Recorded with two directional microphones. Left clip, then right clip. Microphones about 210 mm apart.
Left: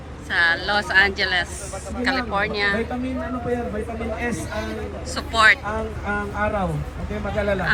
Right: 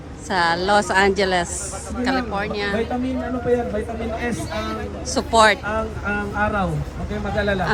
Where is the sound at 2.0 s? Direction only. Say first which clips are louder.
Left 1 dB; 20° right (ahead or behind).